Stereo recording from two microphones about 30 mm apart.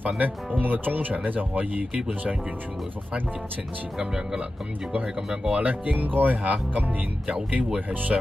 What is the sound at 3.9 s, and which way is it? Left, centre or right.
Speech, right.